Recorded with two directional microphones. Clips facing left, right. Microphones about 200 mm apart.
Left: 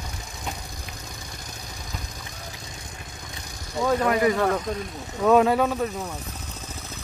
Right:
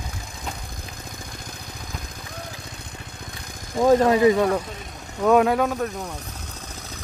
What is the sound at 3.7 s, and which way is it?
Speech, 45° right (ahead or behind).